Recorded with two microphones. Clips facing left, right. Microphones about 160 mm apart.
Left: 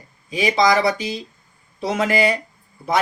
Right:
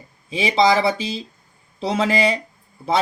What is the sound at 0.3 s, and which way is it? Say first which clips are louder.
Speech: even; 25° right (ahead or behind).